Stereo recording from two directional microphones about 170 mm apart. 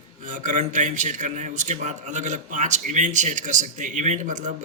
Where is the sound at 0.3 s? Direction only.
50° right (ahead or behind).